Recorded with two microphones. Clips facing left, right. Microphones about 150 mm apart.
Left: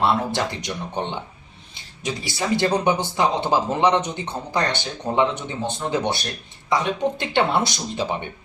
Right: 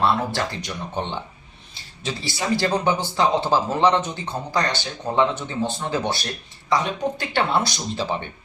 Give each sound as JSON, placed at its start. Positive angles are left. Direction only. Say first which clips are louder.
{"t": 0.0, "sound": "speech", "louder": "left 1 dB", "side_deg": 20}
{"t": 2.0, "sound": "speech", "louder": "left 1 dB", "side_deg": 20}